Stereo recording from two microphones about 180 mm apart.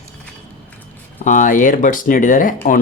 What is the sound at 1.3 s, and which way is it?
Speech, 45° left (ahead or behind).